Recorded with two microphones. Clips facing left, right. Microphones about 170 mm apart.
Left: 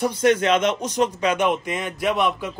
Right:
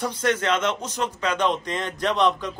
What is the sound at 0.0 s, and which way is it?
Speech, 15° left (ahead or behind).